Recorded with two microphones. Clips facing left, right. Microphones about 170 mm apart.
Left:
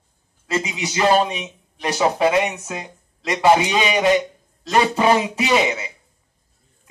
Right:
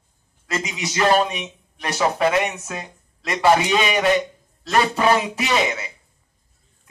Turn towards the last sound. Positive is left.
turn(degrees=20)  # may be behind; listen again after turning